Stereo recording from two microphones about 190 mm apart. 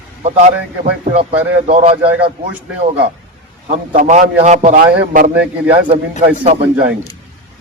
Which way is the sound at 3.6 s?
40° right (ahead or behind).